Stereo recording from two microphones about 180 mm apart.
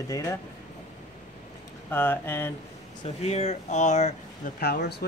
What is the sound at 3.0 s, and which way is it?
Speech, 35° left (ahead or behind).